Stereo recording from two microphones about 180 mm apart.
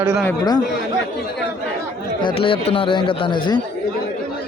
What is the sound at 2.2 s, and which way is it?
Speech, 30° left (ahead or behind).